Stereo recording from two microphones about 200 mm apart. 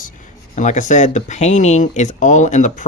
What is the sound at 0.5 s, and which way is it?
Speech, 35° left (ahead or behind).